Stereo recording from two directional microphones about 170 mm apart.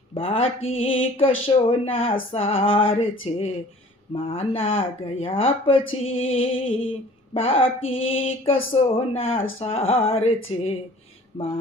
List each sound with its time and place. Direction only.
0.1 s speech: 35° left (ahead or behind)